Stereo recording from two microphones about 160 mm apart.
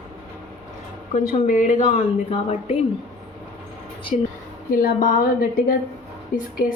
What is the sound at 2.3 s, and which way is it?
Speech, 35° left (ahead or behind).